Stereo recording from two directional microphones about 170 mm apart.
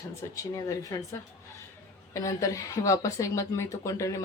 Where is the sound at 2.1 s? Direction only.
20° left (ahead or behind).